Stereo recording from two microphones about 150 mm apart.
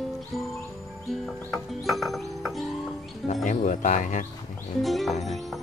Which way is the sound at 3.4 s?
55° left (ahead or behind).